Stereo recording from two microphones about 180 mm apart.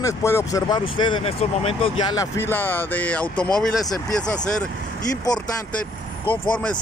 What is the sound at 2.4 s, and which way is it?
Speech, 10° left (ahead or behind).